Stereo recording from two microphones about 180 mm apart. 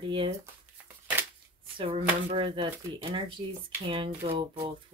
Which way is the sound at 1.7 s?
30° right (ahead or behind).